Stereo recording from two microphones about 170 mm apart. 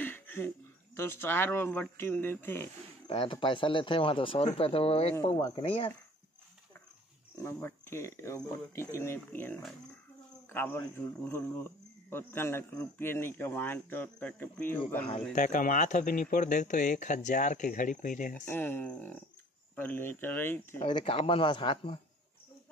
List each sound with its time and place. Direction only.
0.0 s a sound: 10° left (ahead or behind)
0.9 s a man's voice: 15° left (ahead or behind)
3.1 s speech: 30° left (ahead or behind)
7.3 s a man's voice: 15° left (ahead or behind)
15.3 s speech: 50° left (ahead or behind)
18.5 s a man's voice: 15° left (ahead or behind)
20.8 s speech: 35° left (ahead or behind)